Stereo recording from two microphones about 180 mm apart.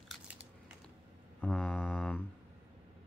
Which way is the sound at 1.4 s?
5° left (ahead or behind).